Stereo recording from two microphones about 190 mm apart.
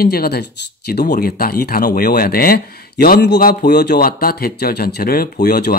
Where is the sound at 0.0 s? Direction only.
55° left (ahead or behind).